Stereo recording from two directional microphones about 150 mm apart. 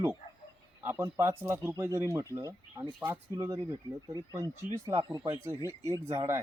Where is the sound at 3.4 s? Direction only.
25° right (ahead or behind).